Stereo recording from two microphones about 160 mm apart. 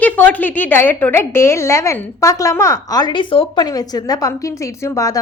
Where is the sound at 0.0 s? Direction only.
10° left (ahead or behind).